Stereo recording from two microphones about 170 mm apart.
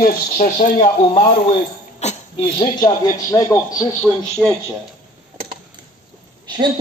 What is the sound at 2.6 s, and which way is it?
Speech, 20° left (ahead or behind).